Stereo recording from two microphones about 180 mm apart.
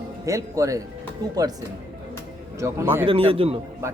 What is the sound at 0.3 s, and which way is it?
Speech, 15° right (ahead or behind).